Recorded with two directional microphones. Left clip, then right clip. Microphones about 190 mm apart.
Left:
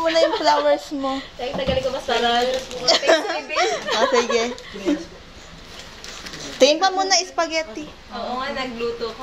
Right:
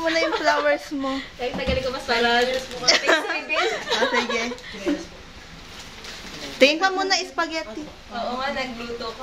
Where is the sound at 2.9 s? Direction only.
Centre (ahead or behind).